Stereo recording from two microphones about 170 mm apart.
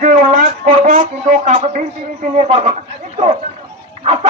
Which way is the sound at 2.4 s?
40° right (ahead or behind).